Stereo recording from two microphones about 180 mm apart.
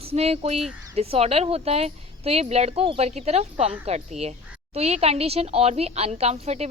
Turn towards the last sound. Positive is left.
turn(degrees=-35)  # may be behind; listen again after turning